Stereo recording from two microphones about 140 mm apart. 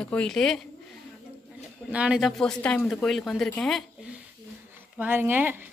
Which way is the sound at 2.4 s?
5° left (ahead or behind).